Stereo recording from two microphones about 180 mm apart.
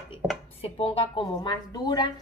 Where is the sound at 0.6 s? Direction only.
30° left (ahead or behind).